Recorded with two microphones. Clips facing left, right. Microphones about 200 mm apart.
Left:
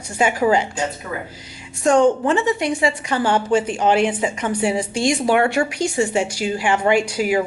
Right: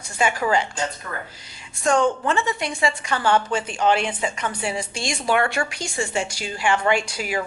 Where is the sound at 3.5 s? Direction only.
10° left (ahead or behind).